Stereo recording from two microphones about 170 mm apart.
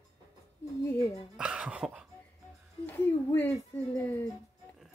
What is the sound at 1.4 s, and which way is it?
Speech, 5° right (ahead or behind).